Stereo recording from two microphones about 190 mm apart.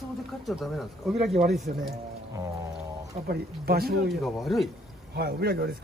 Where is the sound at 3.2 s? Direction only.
55° right (ahead or behind).